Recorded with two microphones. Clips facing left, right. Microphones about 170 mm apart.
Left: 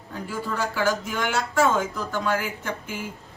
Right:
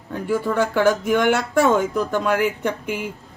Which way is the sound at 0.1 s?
60° right (ahead or behind).